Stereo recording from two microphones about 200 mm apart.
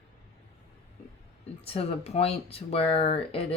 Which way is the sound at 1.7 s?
30° left (ahead or behind).